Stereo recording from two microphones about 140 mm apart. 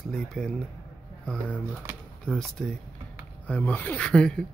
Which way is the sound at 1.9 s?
15° right (ahead or behind).